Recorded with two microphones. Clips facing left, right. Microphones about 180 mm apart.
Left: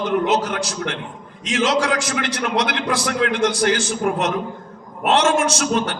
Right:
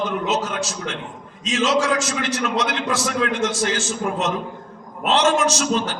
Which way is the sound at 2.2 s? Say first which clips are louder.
Left 1 dB; 65° left (ahead or behind).